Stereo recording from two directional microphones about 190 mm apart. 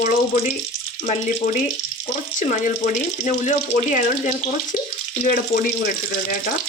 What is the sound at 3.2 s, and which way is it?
Speech, 40° left (ahead or behind).